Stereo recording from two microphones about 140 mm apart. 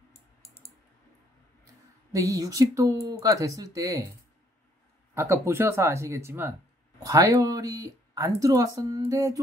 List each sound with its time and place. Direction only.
0.1 s typing: 50° left (ahead or behind)
2.1 s speech: 25° right (ahead or behind)
5.1 s speech: 20° right (ahead or behind)